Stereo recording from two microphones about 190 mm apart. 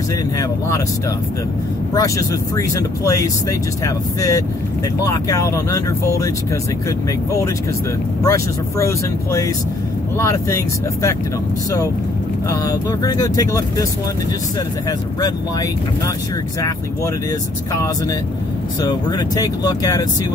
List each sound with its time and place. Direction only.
2.0 s speech: 15° left (ahead or behind)
8.2 s speech: 15° left (ahead or behind)
12.4 s speech: 20° left (ahead or behind)
14.9 s speech: 20° left (ahead or behind)
18.8 s speech: 20° left (ahead or behind)